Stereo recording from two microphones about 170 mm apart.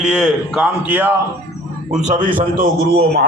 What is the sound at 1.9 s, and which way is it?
A man's voice, 45° right (ahead or behind).